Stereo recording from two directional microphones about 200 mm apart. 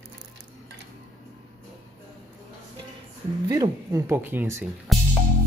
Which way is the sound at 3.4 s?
20° right (ahead or behind).